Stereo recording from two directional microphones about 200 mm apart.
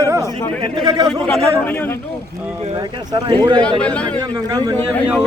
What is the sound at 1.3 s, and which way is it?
Speech, 5° left (ahead or behind).